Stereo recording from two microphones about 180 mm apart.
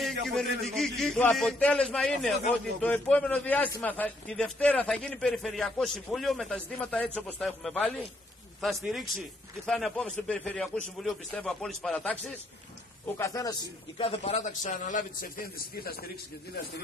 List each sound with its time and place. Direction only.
0.0 s a sound: centre (ahead or behind)
0.7 s a man's voice: centre (ahead or behind)
13.0 s a man's voice: 20° left (ahead or behind)
13.9 s a man's voice: 35° left (ahead or behind); by 16.1 s 60° left (ahead or behind)